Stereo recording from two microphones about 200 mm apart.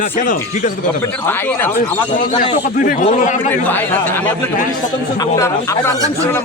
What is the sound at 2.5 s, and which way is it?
Speech, 35° left (ahead or behind).